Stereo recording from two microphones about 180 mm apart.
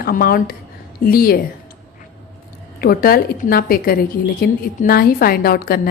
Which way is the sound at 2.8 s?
55° left (ahead or behind).